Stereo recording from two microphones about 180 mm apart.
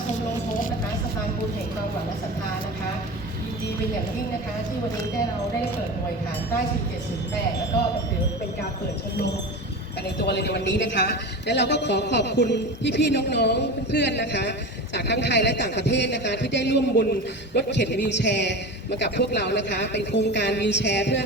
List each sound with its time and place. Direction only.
10.2 s a man's voice: 65° left (ahead or behind)